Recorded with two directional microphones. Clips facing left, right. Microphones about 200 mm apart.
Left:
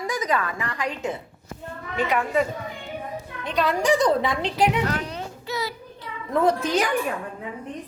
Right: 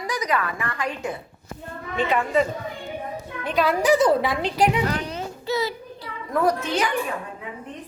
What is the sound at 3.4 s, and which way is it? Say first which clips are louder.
A woman's voice: right 2 dB; centre (ahead or behind).